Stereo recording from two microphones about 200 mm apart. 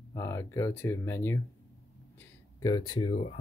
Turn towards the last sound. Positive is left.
turn(degrees=25)  # may be behind; listen again after turning